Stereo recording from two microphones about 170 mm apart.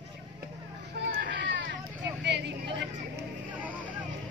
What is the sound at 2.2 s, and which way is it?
Vehicle, 90° right.